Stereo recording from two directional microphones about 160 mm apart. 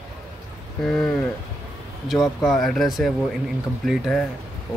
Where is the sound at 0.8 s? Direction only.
5° left (ahead or behind).